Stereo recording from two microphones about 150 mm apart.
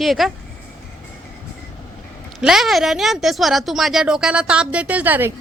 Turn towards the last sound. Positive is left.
turn(degrees=-10)  # may be behind; listen again after turning